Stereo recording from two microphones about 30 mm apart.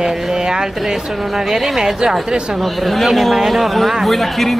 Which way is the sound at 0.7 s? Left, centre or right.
Centre.